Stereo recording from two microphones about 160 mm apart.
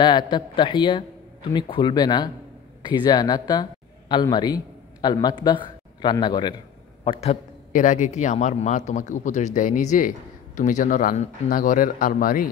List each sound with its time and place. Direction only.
0.0 s a man's voice: 30° left (ahead or behind)
7.1 s a man's voice: 40° left (ahead or behind)
7.7 s speech: 50° left (ahead or behind)